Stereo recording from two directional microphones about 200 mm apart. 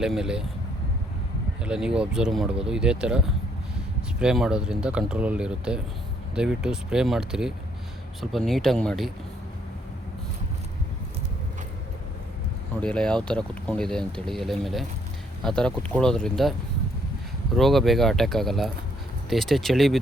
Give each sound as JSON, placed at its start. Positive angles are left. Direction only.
{"t": 0.0, "sound": "speech", "side_deg": -5}
{"t": 1.6, "sound": "speech", "side_deg": -5}
{"t": 12.8, "sound": "speech", "side_deg": 5}
{"t": 17.6, "sound": "speech", "side_deg": 0}